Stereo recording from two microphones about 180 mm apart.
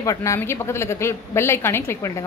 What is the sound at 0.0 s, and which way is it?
A woman's voice, 15° left (ahead or behind).